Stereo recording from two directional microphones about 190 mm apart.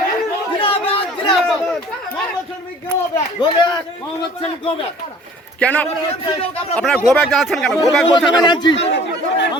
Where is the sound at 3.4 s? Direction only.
20° left (ahead or behind).